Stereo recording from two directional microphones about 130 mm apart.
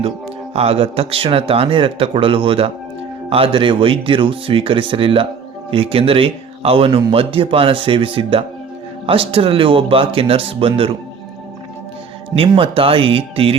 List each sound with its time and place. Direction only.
0.5 s a man's voice: 50° right (ahead or behind)
12.4 s a man's voice: 45° right (ahead or behind)